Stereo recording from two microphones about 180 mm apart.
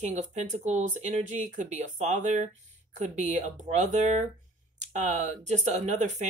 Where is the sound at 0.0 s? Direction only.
40° right (ahead or behind).